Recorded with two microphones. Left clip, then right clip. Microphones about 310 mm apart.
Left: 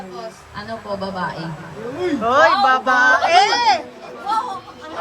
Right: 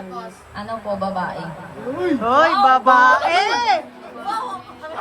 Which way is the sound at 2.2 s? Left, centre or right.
Centre.